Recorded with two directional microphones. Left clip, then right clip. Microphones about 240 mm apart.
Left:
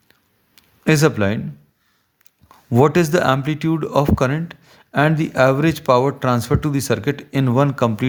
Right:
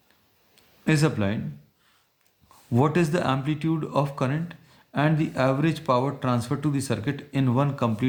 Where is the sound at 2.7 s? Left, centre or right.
Left.